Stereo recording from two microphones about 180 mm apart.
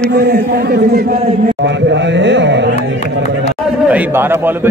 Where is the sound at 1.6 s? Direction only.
85° right.